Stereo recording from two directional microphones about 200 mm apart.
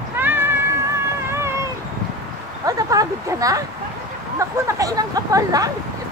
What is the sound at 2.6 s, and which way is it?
Speech, 15° right (ahead or behind).